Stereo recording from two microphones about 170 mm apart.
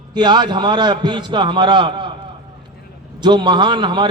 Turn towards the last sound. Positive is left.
turn(degrees=-25)  # may be behind; listen again after turning